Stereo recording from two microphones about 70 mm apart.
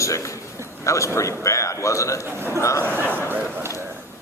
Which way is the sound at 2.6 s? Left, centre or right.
Left.